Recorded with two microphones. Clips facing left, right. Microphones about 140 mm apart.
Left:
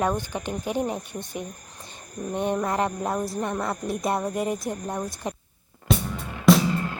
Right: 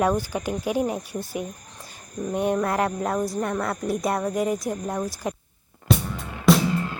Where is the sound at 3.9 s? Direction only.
Centre (ahead or behind).